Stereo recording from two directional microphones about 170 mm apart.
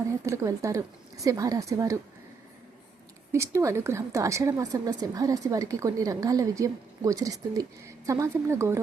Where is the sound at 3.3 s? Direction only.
15° right (ahead or behind).